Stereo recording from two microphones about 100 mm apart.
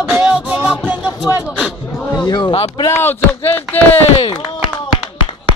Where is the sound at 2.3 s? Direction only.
50° left (ahead or behind).